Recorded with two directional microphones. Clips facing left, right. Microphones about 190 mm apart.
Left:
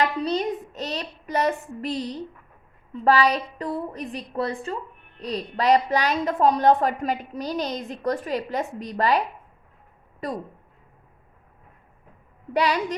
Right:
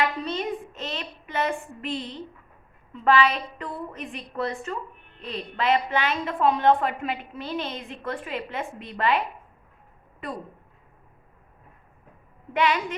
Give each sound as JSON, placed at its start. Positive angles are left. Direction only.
{"t": 0.0, "sound": "a woman's voice", "side_deg": 35}
{"t": 10.2, "sound": "a woman's voice", "side_deg": 40}
{"t": 12.5, "sound": "a woman's voice", "side_deg": 35}